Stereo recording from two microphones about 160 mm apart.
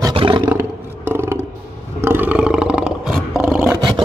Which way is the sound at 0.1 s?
35° right (ahead or behind).